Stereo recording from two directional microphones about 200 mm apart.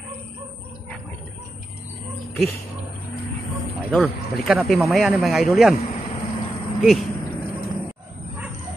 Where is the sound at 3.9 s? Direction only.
Centre (ahead or behind).